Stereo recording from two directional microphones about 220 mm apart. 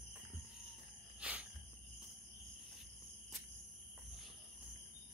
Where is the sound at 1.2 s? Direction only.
5° right (ahead or behind).